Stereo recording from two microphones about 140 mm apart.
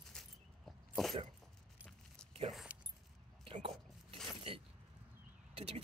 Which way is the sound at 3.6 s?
40° right (ahead or behind).